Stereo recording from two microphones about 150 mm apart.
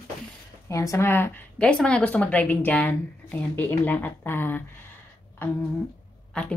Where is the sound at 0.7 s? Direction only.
20° left (ahead or behind).